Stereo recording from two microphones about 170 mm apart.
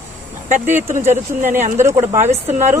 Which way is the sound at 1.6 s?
45° right (ahead or behind).